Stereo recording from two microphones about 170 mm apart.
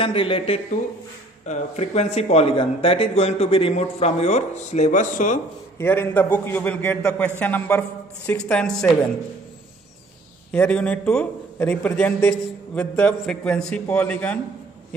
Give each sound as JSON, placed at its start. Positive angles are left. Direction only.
{"t": 0.0, "sound": "speech", "side_deg": 30}
{"t": 5.8, "sound": "a man's voice", "side_deg": 15}
{"t": 10.5, "sound": "a man's voice", "side_deg": 5}